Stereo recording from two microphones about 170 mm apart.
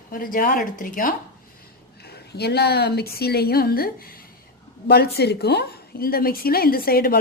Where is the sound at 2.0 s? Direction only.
70° left (ahead or behind).